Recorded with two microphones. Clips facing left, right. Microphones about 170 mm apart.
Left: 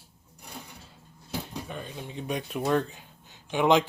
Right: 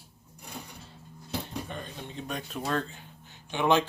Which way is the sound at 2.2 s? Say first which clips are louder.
Left 6 dB; 15° left (ahead or behind).